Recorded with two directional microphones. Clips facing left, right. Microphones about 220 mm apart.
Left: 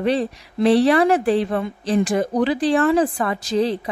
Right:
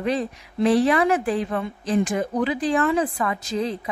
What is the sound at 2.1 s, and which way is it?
A woman's voice, 35° left (ahead or behind).